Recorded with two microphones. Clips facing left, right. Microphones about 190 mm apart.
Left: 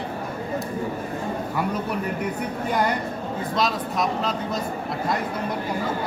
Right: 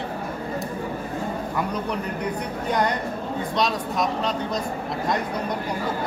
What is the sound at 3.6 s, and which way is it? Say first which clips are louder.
Speech: even; centre (ahead or behind).